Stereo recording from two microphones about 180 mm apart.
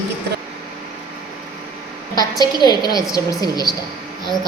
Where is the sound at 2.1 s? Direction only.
20° left (ahead or behind).